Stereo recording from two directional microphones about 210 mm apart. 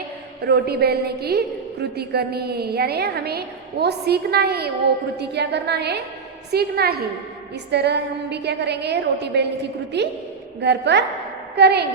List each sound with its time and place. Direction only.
0.4 s a woman's voice: 50° right (ahead or behind)